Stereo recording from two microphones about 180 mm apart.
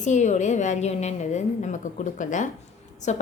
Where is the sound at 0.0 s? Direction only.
40° left (ahead or behind).